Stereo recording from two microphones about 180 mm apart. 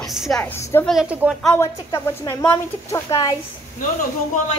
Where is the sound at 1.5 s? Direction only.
15° left (ahead or behind).